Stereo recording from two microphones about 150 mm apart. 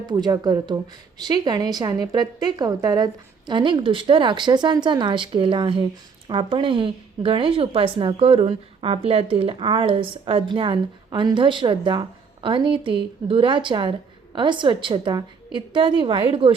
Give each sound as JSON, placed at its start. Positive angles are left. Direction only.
{"t": 0.0, "sound": "a woman's voice", "side_deg": -25}